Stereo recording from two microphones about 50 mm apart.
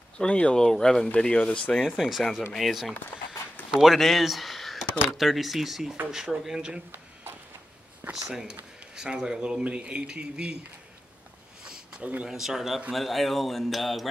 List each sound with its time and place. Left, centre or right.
0.2 s speech: left
2.0 s speech: centre
8.1 s speech: centre
11.6 s a sound: centre
12.3 s speech: centre